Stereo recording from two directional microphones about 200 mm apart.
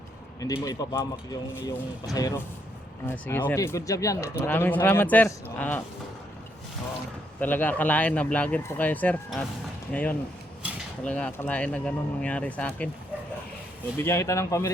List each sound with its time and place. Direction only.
0.3 s speech: 15° left (ahead or behind)
7.3 s speech: 10° left (ahead or behind)
14.0 s speech: 15° left (ahead or behind)